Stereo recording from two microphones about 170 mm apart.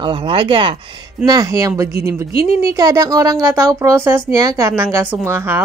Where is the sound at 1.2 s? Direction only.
20° right (ahead or behind).